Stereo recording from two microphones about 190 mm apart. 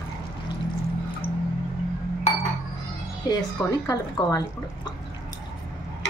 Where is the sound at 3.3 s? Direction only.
20° left (ahead or behind).